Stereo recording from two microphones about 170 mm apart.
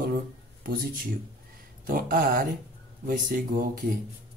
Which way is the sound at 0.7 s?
60° right (ahead or behind).